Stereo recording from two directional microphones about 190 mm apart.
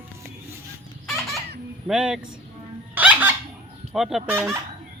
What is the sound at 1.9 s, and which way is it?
Speech, 5° right (ahead or behind).